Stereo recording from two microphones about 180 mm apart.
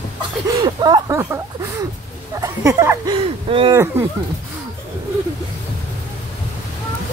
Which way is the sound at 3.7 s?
15° right (ahead or behind).